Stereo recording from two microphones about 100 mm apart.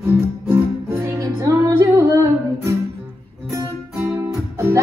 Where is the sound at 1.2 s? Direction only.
30° right (ahead or behind).